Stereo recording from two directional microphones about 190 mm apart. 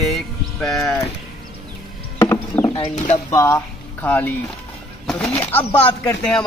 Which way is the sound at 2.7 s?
35° left (ahead or behind).